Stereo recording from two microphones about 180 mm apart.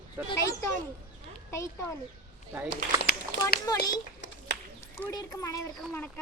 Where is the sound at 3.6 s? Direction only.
20° left (ahead or behind).